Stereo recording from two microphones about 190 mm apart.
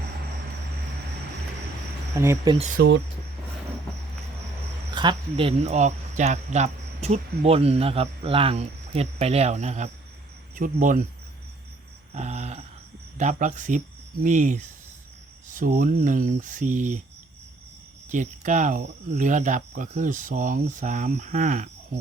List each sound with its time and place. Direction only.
2.1 s speech: 15° right (ahead or behind)
2.8 s speech: 60° right (ahead or behind)
4.9 s speech: 25° right (ahead or behind); by 11.0 s 45° right (ahead or behind)
12.1 s a sound: 35° right (ahead or behind)
13.1 s speech: 40° right (ahead or behind)
18.1 s speech: 40° right (ahead or behind)